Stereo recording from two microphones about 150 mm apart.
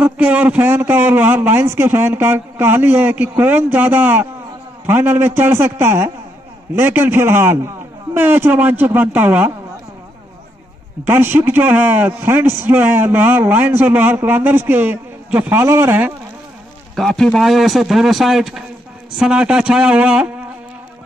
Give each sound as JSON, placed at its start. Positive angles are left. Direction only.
{"t": 0.0, "sound": "a man's voice", "side_deg": -10}
{"t": 11.1, "sound": "a man's voice", "side_deg": -15}
{"t": 16.9, "sound": "a man's voice", "side_deg": 5}